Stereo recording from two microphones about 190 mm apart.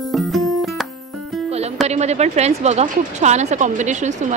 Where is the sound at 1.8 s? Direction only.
35° right (ahead or behind).